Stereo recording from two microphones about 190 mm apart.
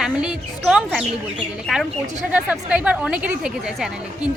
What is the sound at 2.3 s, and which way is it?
Speech, 5° right (ahead or behind).